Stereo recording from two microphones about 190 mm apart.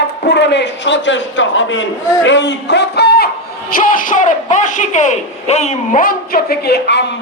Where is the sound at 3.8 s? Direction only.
45° left (ahead or behind).